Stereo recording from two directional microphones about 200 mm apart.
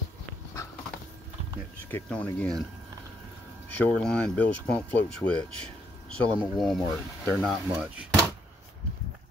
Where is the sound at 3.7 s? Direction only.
5° left (ahead or behind).